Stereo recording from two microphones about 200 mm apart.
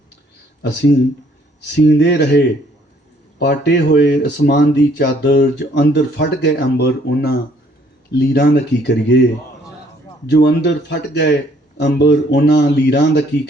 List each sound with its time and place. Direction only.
1.6 s speech: 60° left (ahead or behind)
3.4 s speech: 55° left (ahead or behind)
10.2 s speech: 60° left (ahead or behind)